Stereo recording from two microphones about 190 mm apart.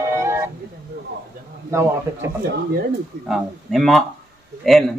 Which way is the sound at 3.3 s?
Centre (ahead or behind).